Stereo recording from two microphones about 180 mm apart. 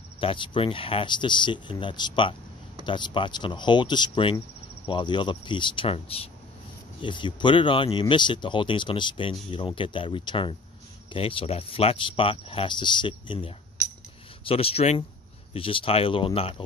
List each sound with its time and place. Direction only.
0.2 s speech: 30° left (ahead or behind)